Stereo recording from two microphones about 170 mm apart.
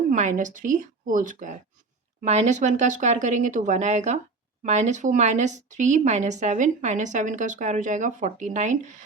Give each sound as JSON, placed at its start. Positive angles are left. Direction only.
{"t": 0.1, "sound": "speech", "side_deg": -50}